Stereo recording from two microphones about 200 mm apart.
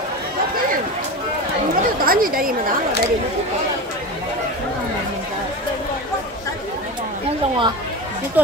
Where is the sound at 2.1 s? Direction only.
45° right (ahead or behind).